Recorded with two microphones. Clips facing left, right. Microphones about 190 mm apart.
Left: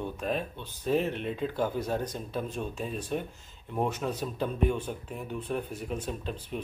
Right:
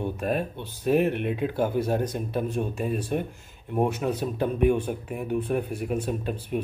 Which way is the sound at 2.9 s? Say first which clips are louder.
Right 5 dB; 55° right (ahead or behind).